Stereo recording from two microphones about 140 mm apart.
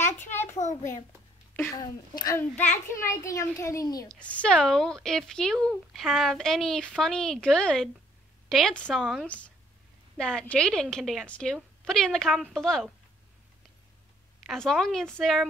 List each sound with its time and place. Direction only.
0.3 s a sound: 15° left (ahead or behind)
0.6 s a child's voice: 60° left (ahead or behind)
1.8 s a child's voice: 30° left (ahead or behind)
2.3 s a child's voice: 10° left (ahead or behind)
3.0 s a child's voice: 20° left (ahead or behind)
4.1 s speech: 10° left (ahead or behind)
14.4 s speech: centre (ahead or behind)